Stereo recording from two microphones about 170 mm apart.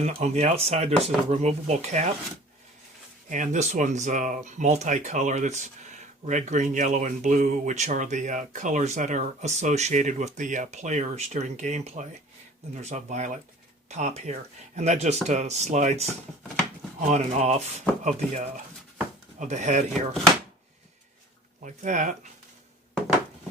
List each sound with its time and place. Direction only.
0.2 s speech: 40° right (ahead or behind)
3.2 s speech: 45° right (ahead or behind)
17.1 s speech: 40° right (ahead or behind)
21.6 s speech: 45° right (ahead or behind)